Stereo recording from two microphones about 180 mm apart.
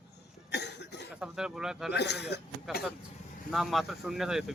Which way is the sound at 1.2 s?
5° right (ahead or behind).